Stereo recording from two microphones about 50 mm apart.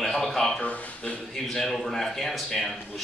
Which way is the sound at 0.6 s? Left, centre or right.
Left.